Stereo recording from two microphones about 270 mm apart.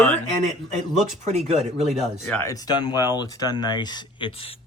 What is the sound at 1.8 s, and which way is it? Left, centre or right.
Speech, centre.